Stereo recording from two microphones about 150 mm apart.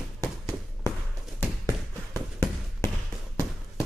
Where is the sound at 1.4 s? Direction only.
25° right (ahead or behind).